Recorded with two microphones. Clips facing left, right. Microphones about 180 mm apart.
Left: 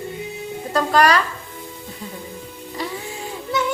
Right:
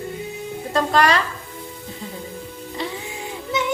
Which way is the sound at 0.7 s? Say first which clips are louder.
Left 1 dB; 25° right (ahead or behind).